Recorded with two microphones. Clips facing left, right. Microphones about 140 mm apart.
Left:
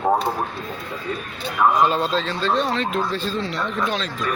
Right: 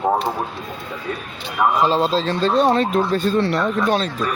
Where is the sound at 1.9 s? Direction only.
30° right (ahead or behind); by 3.6 s 60° right (ahead or behind).